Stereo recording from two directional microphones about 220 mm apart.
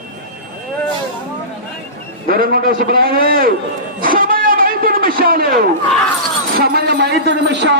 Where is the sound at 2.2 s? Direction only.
40° right (ahead or behind).